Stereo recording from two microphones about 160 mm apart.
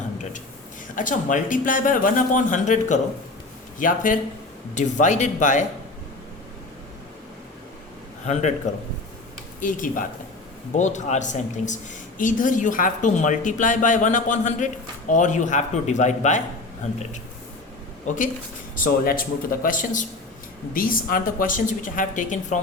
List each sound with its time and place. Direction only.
0.9 s a woman's voice: 55° left (ahead or behind)
8.2 s a woman's voice: 45° left (ahead or behind)
9.6 s a woman's voice: 55° left (ahead or behind)
18.0 s speech: 55° left (ahead or behind)